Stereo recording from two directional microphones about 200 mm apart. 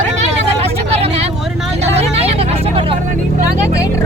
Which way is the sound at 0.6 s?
30° right (ahead or behind).